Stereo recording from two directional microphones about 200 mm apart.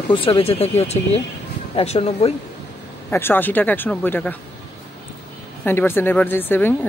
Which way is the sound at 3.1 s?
10° left (ahead or behind).